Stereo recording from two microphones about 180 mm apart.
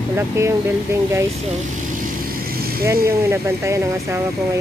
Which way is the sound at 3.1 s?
15° right (ahead or behind).